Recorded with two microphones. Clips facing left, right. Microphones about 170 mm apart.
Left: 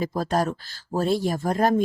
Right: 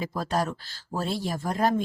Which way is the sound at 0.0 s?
40° left (ahead or behind).